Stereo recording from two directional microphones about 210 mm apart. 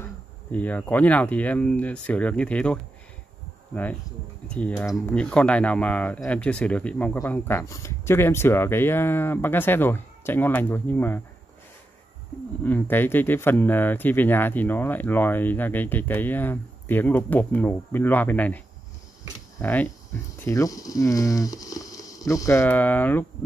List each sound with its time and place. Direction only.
0.0 s speech: 5° left (ahead or behind)
4.5 s speech: 5° left (ahead or behind)
12.6 s speech: 10° left (ahead or behind)
19.6 s speech: 10° left (ahead or behind)